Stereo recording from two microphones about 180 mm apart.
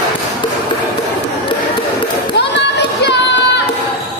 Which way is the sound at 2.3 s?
70° left (ahead or behind).